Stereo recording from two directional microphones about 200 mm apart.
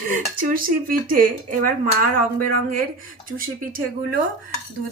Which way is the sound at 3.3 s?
45° right (ahead or behind).